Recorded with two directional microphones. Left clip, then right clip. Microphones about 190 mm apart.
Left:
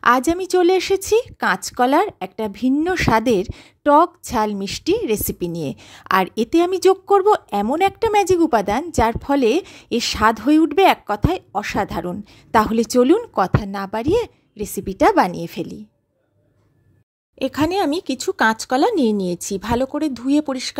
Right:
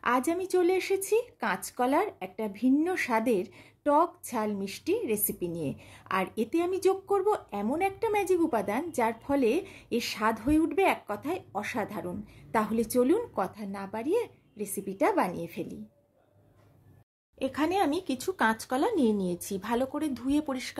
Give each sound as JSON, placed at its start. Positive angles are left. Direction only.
{"t": 0.0, "sound": "speech", "side_deg": 45}
{"t": 17.4, "sound": "speech", "side_deg": 45}